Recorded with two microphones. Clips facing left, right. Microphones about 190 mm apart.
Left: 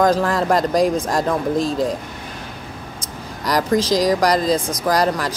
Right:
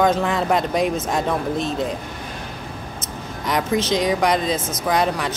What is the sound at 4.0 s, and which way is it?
Speech, centre (ahead or behind).